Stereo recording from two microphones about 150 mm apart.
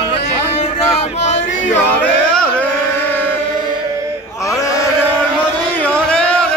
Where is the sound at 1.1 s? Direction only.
50° left (ahead or behind).